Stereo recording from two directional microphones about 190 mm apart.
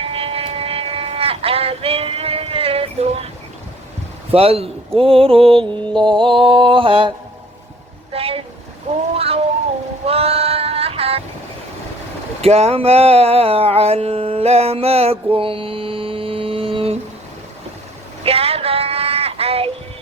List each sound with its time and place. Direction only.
0.0 s vehicle: 30° right (ahead or behind)
4.3 s speech: 30° right (ahead or behind)
4.9 s mantra: 30° right (ahead or behind)
8.1 s a sound: 30° right (ahead or behind)
9.1 s cat: 30° right (ahead or behind)
10.1 s female singing: 30° right (ahead or behind)
12.4 s a sound: 35° right (ahead or behind)
18.2 s child singing: 30° right (ahead or behind)